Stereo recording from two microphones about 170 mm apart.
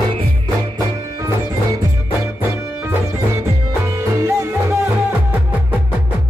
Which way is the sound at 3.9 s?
15° right (ahead or behind).